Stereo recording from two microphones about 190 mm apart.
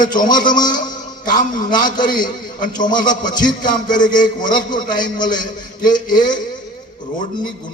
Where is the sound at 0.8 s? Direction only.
45° left (ahead or behind).